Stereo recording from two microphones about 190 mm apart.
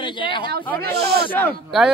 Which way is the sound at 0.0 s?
25° left (ahead or behind).